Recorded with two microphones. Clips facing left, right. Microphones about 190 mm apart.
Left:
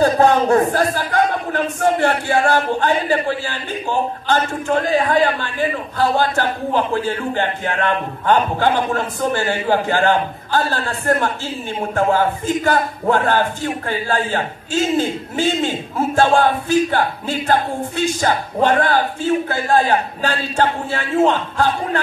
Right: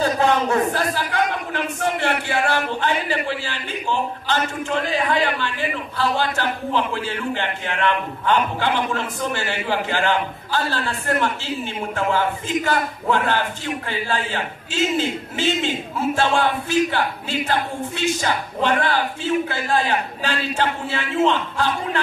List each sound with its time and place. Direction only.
0.5 s speech: 45° left (ahead or behind)